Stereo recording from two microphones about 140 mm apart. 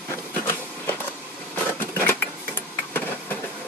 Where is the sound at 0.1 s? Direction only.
20° left (ahead or behind).